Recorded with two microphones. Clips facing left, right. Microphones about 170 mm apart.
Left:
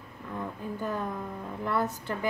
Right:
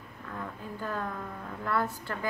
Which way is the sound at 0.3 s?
20° left (ahead or behind).